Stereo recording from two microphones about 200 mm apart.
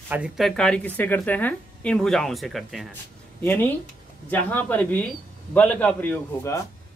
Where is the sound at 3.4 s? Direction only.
10° left (ahead or behind).